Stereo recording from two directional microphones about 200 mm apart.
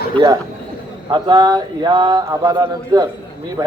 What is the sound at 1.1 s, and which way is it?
Mantra, 20° right (ahead or behind).